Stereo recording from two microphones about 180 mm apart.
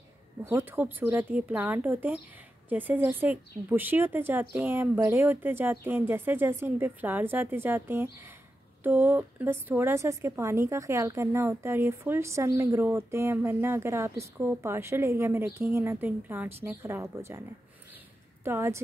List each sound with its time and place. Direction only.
0.4 s a woman's voice: 15° right (ahead or behind)
18.4 s a woman's voice: 15° right (ahead or behind)